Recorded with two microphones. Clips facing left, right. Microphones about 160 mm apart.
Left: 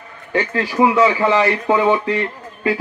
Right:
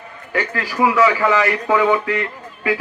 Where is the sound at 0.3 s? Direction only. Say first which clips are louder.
Left 3 dB; 25° left (ahead or behind).